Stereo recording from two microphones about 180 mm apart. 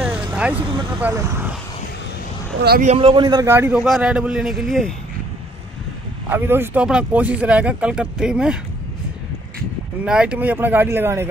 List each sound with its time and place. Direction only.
0.0 s vehicle: 5° right (ahead or behind)
0.6 s speech: 30° right (ahead or behind)
1.0 s speech: 15° right (ahead or behind)
2.8 s speech: 35° right (ahead or behind); by 4.9 s centre (ahead or behind)
6.3 s speech: 10° right (ahead or behind)
10.0 s speech: 5° right (ahead or behind)